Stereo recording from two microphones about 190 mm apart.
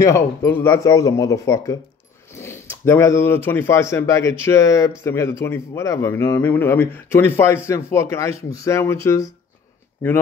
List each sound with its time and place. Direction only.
0.0 s speech: 15° left (ahead or behind)